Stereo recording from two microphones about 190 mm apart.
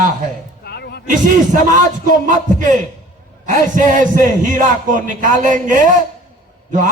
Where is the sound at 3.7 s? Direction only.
40° right (ahead or behind).